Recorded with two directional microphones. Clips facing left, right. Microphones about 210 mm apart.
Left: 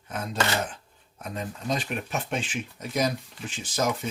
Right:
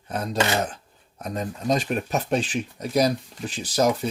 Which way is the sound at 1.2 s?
40° right (ahead or behind).